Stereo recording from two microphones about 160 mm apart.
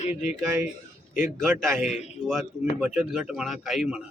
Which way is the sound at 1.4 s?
Centre (ahead or behind).